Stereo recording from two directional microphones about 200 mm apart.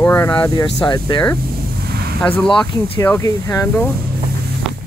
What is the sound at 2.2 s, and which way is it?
Speech, 5° left (ahead or behind).